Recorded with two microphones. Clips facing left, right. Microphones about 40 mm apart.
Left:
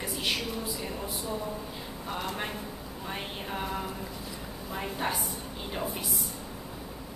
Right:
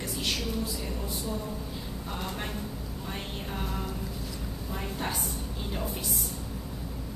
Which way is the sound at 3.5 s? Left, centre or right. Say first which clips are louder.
Left 2 dB; centre.